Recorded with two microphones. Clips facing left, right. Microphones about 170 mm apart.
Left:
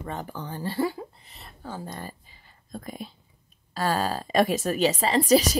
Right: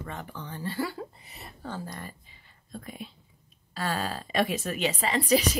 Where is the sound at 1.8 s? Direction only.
30° left (ahead or behind).